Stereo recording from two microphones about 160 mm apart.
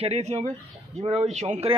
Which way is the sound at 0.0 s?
40° right (ahead or behind).